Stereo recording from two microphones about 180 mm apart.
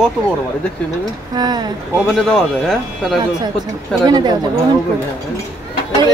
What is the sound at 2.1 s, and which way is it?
Speech, centre (ahead or behind).